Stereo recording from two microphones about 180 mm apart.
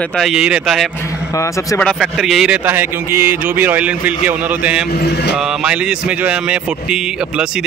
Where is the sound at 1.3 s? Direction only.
15° left (ahead or behind).